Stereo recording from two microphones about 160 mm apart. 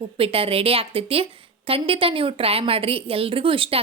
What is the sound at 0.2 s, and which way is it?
A woman's voice, 35° right (ahead or behind).